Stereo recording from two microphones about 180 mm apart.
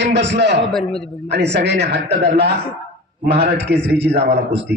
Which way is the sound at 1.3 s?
70° right (ahead or behind).